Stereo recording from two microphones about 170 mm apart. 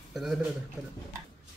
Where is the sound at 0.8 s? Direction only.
5° right (ahead or behind).